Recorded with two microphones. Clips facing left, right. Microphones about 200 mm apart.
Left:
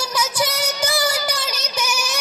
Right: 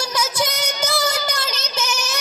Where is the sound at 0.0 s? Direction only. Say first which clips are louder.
Even; 5° left (ahead or behind).